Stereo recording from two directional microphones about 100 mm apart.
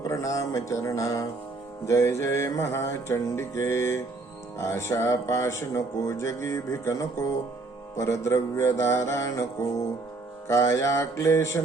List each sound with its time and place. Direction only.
0.0 s speech: 30° left (ahead or behind)